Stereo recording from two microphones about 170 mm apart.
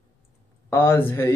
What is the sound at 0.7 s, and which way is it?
Speech, 15° left (ahead or behind).